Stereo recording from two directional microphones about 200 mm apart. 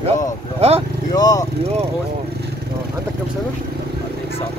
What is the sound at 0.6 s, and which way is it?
Speech, 30° right (ahead or behind).